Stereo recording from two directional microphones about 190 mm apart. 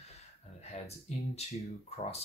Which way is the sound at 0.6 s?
35° left (ahead or behind).